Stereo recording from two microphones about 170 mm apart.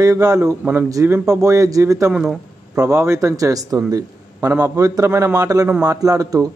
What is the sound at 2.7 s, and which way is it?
Speech, 20° right (ahead or behind).